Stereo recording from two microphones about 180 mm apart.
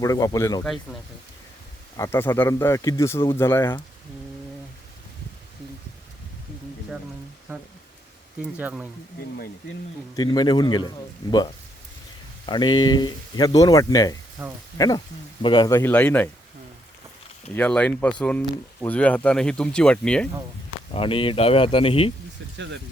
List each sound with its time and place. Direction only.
0.0 s speech: 20° left (ahead or behind)
0.6 s speech: centre (ahead or behind)
2.0 s speech: 15° left (ahead or behind)
8.4 s speech: 5° right (ahead or behind)
10.2 s speech: 25° left (ahead or behind)
12.5 s speech: 25° left (ahead or behind)
14.4 s speech: 10° right (ahead or behind)
14.8 s speech: 20° left (ahead or behind)
17.5 s speech: 10° left (ahead or behind)
20.9 s speech: 30° left (ahead or behind)
22.5 s speech: 80° right